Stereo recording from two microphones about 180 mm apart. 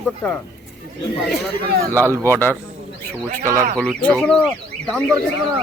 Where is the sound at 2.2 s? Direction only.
10° left (ahead or behind).